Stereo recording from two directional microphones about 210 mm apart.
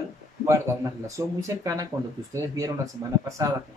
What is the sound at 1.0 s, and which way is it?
Speech, 15° right (ahead or behind).